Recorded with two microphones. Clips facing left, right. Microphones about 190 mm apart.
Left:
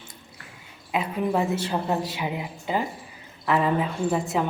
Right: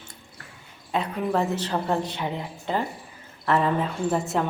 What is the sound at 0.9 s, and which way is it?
A woman's voice, 10° left (ahead or behind).